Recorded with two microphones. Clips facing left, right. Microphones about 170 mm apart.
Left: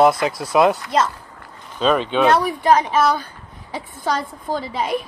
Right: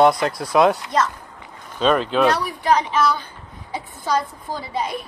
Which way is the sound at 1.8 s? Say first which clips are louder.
Even; centre (ahead or behind).